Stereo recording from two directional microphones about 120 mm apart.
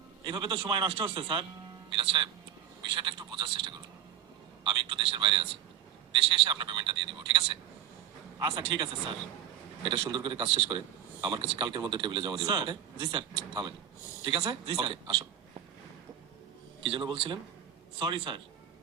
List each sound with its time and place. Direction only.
0.3 s a man's voice: 40° right (ahead or behind)
16.8 s a man's voice: 45° right (ahead or behind)